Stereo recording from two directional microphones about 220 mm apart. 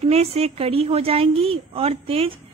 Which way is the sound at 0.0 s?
30° right (ahead or behind).